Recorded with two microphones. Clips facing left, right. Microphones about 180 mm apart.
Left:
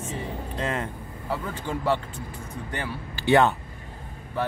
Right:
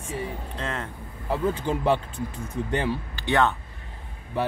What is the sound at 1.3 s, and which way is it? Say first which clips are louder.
Speech: right 5 dB; 20° right (ahead or behind).